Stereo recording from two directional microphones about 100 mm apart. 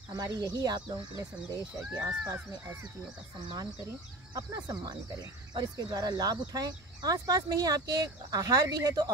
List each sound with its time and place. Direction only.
0.1 s speech: 40° right (ahead or behind)
1.5 s speech: 25° right (ahead or behind)
2.0 s speech: 40° right (ahead or behind)
2.3 s speech: 20° right (ahead or behind)
4.3 s speech: 40° right (ahead or behind)